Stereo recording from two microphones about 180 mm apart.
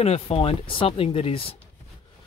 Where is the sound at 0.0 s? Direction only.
35° left (ahead or behind).